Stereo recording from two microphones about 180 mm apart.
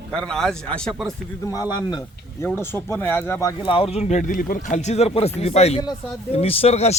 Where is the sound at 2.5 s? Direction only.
10° left (ahead or behind).